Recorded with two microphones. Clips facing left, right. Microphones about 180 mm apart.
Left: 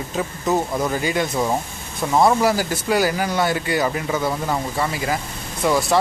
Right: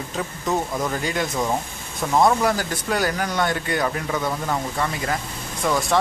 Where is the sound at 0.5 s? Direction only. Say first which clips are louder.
Left 3 dB; 5° left (ahead or behind).